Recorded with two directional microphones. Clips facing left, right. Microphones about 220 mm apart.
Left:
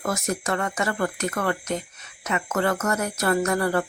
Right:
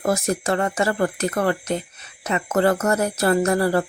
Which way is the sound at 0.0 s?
30° right (ahead or behind).